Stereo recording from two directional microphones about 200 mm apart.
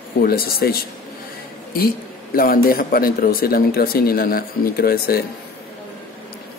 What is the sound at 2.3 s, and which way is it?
Speech, 45° left (ahead or behind).